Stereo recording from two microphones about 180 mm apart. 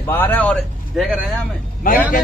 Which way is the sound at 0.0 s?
10° left (ahead or behind).